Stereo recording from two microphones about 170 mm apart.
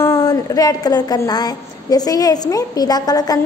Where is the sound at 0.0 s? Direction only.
20° left (ahead or behind).